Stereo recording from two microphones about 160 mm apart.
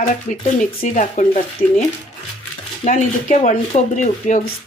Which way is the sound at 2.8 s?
50° left (ahead or behind).